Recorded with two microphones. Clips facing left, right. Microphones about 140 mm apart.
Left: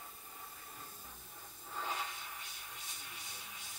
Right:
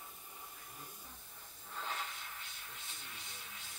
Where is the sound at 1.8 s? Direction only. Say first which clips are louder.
Left 2 dB; 15° left (ahead or behind).